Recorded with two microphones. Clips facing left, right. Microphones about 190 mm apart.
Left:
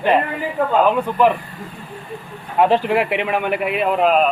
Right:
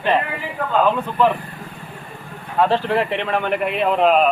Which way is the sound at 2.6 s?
15° left (ahead or behind).